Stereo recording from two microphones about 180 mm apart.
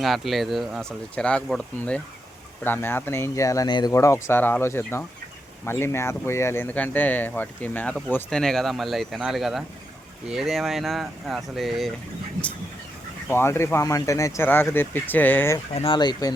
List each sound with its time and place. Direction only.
0.0 s speech: centre (ahead or behind)
13.2 s speech: 15° left (ahead or behind)
15.7 s speech: 30° left (ahead or behind)